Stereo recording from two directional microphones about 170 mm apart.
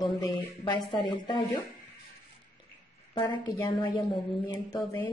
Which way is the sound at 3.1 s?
25° left (ahead or behind).